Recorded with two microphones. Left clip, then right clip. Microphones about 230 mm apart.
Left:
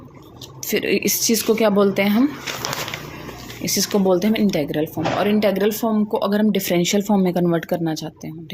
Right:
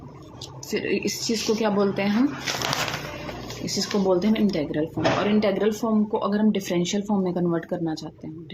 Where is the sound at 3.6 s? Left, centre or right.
Left.